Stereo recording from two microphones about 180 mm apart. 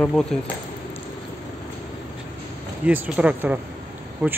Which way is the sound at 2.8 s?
10° right (ahead or behind).